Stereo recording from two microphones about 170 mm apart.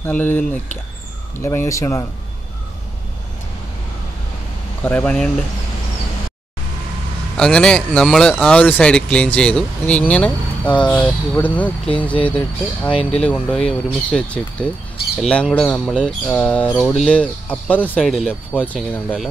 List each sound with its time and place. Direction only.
0.0 s speech: 10° left (ahead or behind)
4.8 s speech: 10° left (ahead or behind)
7.3 s speech: 5° left (ahead or behind)